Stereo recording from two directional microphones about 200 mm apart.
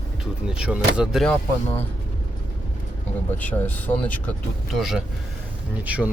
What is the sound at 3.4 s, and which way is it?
Speech, 10° left (ahead or behind).